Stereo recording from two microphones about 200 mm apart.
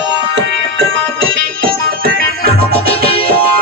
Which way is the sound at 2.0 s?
50° right (ahead or behind).